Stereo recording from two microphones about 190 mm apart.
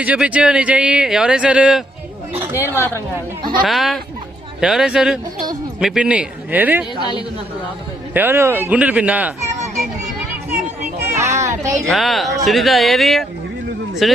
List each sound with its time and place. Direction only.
0.0 s speech: 5° right (ahead or behind)
2.3 s chatter: 10° right (ahead or behind)
2.6 s a woman's voice: 10° left (ahead or behind)
3.6 s speech: centre (ahead or behind)
7.0 s a woman's voice: 25° left (ahead or behind)
8.1 s speech: 10° right (ahead or behind)
11.0 s children playing: 15° right (ahead or behind)
11.9 s speech: centre (ahead or behind)